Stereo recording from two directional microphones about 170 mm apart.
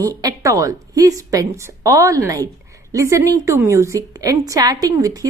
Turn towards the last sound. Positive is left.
turn(degrees=-20)  # may be behind; listen again after turning